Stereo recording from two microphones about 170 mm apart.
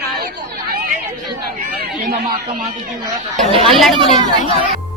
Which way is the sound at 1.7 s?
60° right (ahead or behind).